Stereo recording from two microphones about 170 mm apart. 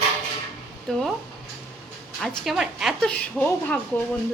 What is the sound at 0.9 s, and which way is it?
Speech, 5° left (ahead or behind).